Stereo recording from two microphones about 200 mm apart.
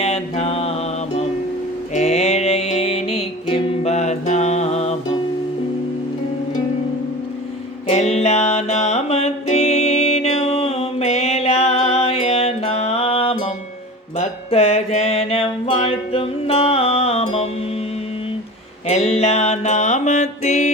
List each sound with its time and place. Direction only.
0.0 s mantra: 30° left (ahead or behind)
1.9 s music: 35° left (ahead or behind)
7.9 s music: 35° left (ahead or behind)
18.9 s music: 35° left (ahead or behind)